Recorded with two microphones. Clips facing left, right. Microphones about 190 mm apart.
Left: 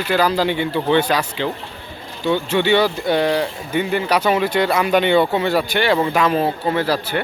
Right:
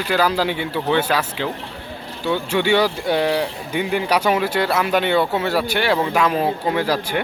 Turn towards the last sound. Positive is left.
turn(degrees=-10)  # may be behind; listen again after turning